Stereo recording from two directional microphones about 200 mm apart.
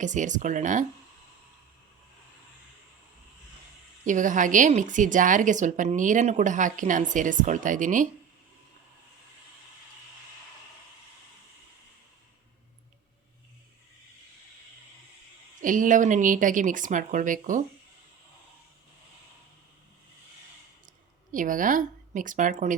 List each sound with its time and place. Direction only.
0.0 s a woman's voice: 40° right (ahead or behind)
4.0 s a woman's voice: 40° right (ahead or behind)
15.6 s a woman's voice: 40° right (ahead or behind)
21.3 s a woman's voice: 40° right (ahead or behind)